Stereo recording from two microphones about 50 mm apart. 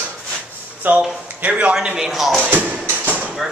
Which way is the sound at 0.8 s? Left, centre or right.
Right.